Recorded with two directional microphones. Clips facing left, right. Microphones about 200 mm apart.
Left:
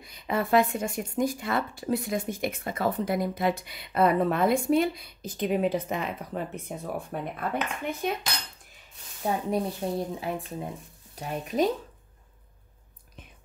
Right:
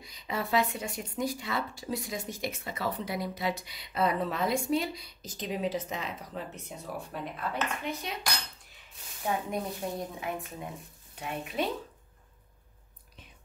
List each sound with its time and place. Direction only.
0.0 s speech: 55° left (ahead or behind)
7.8 s cutlery: 50° left (ahead or behind)
9.2 s speech: 30° left (ahead or behind)